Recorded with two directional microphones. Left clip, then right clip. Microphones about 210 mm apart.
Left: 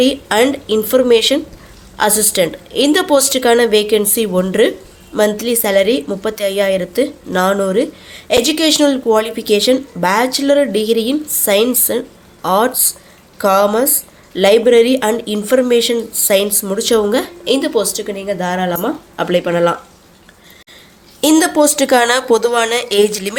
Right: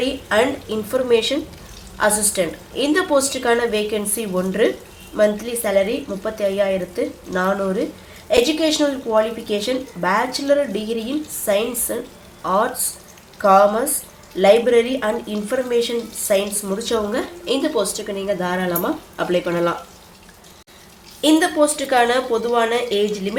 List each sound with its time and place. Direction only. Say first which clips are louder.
0.0 s speech: left 6 dB; 45° left (ahead or behind)
21.2 s a woman's voice: left 4 dB; 55° left (ahead or behind)